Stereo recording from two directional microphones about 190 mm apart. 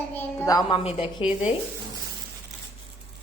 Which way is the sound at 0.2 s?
10° left (ahead or behind).